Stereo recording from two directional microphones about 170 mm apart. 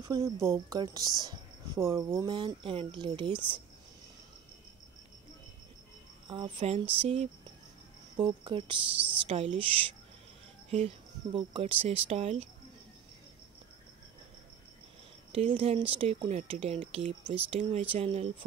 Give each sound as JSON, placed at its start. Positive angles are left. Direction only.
{"t": 0.0, "sound": "speech", "side_deg": -20}
{"t": 2.3, "sound": "speech", "side_deg": -30}
{"t": 6.2, "sound": "speech", "side_deg": -30}
{"t": 15.3, "sound": "speech", "side_deg": -35}